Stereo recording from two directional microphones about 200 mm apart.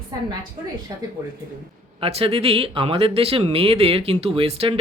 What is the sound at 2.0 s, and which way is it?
Speech, 30° right (ahead or behind).